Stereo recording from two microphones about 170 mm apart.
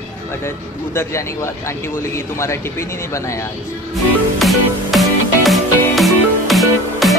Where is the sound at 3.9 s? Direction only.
Centre (ahead or behind).